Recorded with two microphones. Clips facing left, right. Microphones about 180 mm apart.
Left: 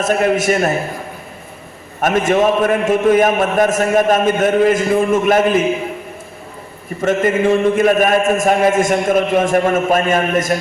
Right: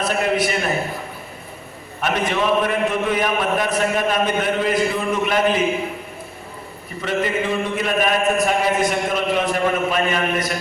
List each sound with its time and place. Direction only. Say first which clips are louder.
0.0 s a man's voice: left 5 dB; 45° left (ahead or behind)
2.0 s a man's voice: left 7 dB; 45° left (ahead or behind)
7.0 s a man's voice: left 7 dB; 45° left (ahead or behind)